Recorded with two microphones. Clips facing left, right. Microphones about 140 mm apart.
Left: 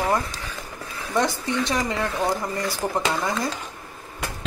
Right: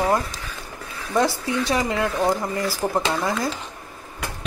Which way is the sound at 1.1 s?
5° right (ahead or behind).